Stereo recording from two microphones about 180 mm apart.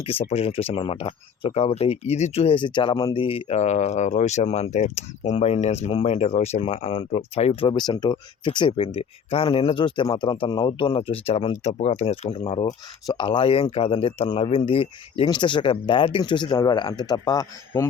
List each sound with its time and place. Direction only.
0.0 s speech: 30° left (ahead or behind)